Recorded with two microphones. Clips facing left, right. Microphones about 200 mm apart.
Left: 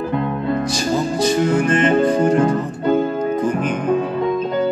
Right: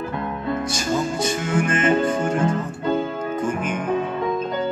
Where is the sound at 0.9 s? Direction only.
35° left (ahead or behind).